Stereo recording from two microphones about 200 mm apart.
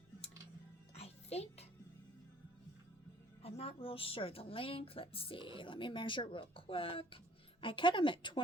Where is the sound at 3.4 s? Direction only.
30° left (ahead or behind).